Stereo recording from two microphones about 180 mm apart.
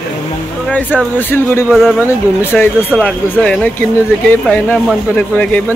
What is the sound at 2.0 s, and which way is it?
Speech, 10° left (ahead or behind).